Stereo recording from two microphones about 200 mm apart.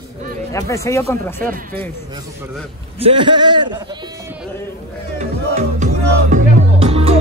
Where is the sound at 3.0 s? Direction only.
25° right (ahead or behind).